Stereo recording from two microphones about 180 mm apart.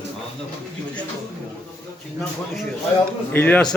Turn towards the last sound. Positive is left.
turn(degrees=10)  # may be behind; listen again after turning